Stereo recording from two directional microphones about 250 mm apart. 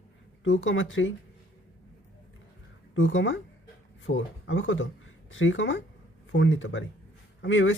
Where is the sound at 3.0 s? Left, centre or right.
Left.